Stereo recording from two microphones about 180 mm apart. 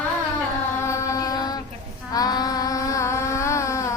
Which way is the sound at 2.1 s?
20° left (ahead or behind).